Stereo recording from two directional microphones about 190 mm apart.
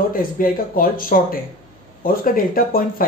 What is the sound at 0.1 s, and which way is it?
Speech, 50° left (ahead or behind).